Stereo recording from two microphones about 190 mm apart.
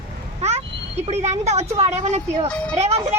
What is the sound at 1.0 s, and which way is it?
A woman's voice, 35° right (ahead or behind).